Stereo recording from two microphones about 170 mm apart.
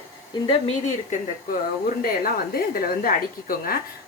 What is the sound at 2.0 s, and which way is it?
A woman's voice, 60° left (ahead or behind).